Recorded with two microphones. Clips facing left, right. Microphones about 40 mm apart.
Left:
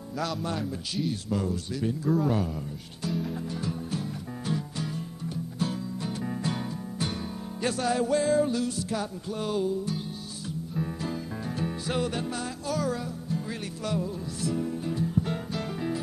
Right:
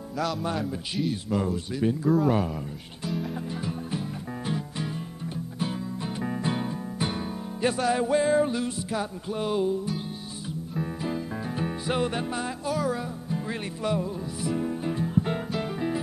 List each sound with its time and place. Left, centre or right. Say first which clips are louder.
0.2 s a man's voice: right 3 dB; centre
1.1 s speech: right 2 dB; centre
2.0 s a man's voice: right 3 dB; centre
2.3 s speech: right 3 dB; right
3.1 s music: even; centre
4.5 s music: even; right